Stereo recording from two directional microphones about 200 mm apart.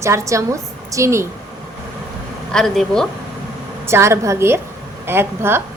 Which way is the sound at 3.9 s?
15° right (ahead or behind).